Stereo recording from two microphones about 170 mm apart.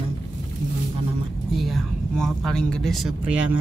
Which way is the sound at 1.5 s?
Centre (ahead or behind).